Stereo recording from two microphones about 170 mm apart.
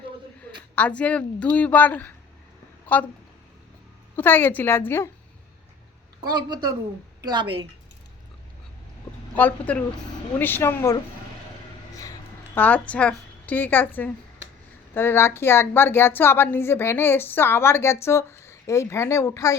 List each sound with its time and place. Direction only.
0.8 s a woman's voice: 10° left (ahead or behind)
4.1 s a woman's voice: 10° left (ahead or behind)
6.2 s a woman's voice: 25° right (ahead or behind)
9.3 s a woman's voice: 10° left (ahead or behind)
12.5 s a woman's voice: 10° left (ahead or behind)